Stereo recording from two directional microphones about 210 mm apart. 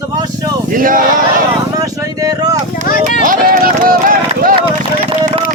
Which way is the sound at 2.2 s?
15° right (ahead or behind).